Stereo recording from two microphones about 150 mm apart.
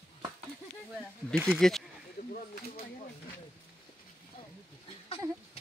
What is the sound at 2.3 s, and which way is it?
Snake, 70° left (ahead or behind).